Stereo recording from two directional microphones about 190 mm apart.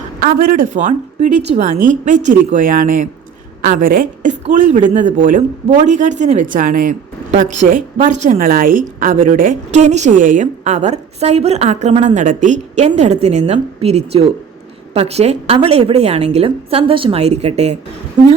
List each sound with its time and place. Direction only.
0.2 s a woman's voice: 45° right (ahead or behind)